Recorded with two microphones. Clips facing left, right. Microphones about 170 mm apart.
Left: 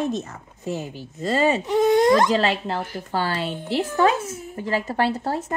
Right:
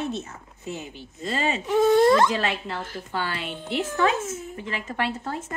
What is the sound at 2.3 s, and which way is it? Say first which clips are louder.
A woman's voice: left 6 dB; 30° left (ahead or behind).